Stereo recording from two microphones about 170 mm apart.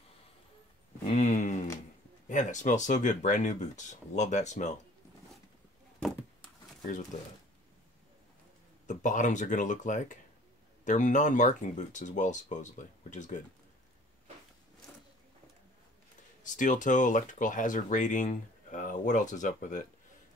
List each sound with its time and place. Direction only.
1.0 s a sound: 45° left (ahead or behind)
2.2 s speech: 45° left (ahead or behind)
8.8 s speech: 45° left (ahead or behind)
16.4 s speech: 50° left (ahead or behind)